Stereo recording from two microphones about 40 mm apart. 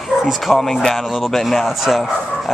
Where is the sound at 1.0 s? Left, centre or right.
Centre.